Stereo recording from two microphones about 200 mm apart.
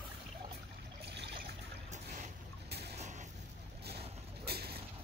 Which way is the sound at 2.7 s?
55° right (ahead or behind).